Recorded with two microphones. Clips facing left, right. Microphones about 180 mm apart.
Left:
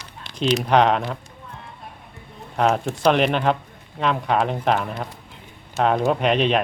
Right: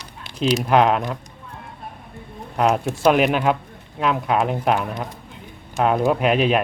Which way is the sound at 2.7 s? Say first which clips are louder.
Right 2 dB; 5° right (ahead or behind).